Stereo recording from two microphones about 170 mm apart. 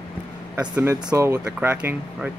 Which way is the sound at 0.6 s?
10° right (ahead or behind).